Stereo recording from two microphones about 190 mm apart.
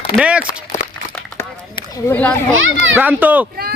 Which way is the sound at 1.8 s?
15° left (ahead or behind).